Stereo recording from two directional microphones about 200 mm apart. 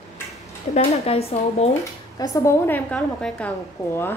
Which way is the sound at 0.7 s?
30° left (ahead or behind).